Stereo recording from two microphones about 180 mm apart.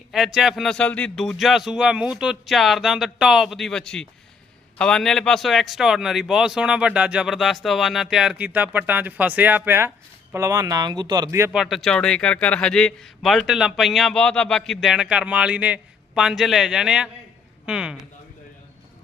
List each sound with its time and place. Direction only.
0.1 s a man's voice: centre (ahead or behind)
11.5 s a man's voice: centre (ahead or behind)